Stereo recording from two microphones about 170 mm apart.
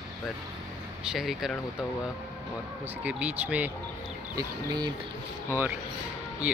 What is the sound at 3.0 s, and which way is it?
Speech, 10° right (ahead or behind).